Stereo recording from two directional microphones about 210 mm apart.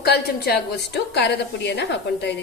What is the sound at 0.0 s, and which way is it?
A woman's voice, 50° left (ahead or behind).